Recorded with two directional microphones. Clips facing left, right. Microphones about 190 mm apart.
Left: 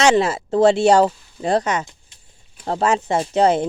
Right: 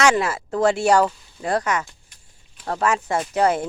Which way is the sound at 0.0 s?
25° left (ahead or behind).